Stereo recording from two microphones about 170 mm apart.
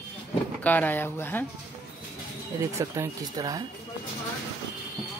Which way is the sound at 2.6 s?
20° right (ahead or behind).